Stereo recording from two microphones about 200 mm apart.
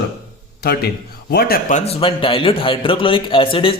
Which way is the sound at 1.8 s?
30° left (ahead or behind).